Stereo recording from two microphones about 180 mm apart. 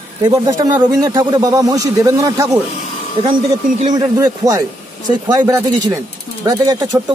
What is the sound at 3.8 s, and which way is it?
Speech, 20° right (ahead or behind).